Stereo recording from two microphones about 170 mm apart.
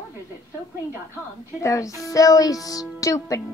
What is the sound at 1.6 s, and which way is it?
Speech, 20° left (ahead or behind).